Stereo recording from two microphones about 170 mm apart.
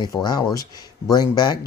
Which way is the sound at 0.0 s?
25° left (ahead or behind).